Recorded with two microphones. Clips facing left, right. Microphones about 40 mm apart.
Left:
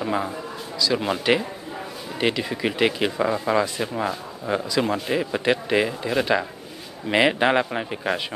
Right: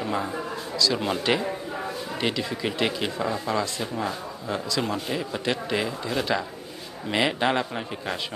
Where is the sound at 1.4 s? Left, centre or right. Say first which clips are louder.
Right 3 dB; centre.